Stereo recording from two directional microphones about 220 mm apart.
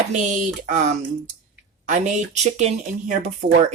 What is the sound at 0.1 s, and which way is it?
Speech, 35° right (ahead or behind).